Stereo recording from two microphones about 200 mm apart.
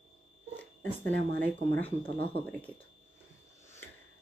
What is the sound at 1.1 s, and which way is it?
Speech, 55° right (ahead or behind).